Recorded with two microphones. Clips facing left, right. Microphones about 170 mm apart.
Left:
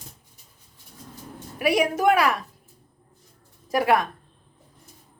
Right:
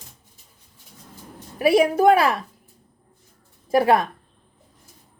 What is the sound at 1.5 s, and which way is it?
Speech, 30° right (ahead or behind).